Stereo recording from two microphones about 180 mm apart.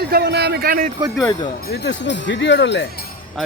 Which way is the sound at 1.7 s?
70° left (ahead or behind).